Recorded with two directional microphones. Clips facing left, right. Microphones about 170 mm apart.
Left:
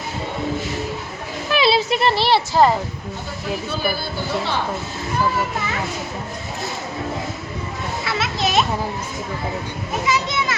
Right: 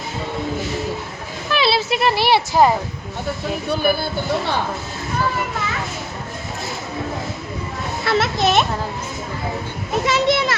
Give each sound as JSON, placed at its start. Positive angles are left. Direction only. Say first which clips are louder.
{"t": 1.5, "sound": "speech", "louder": "left 1 dB", "side_deg": -5}
{"t": 8.0, "sound": "a child's voice", "louder": "right 6 dB", "side_deg": -55}
{"t": 10.1, "sound": "a child's voice", "louder": "right 5 dB", "side_deg": -70}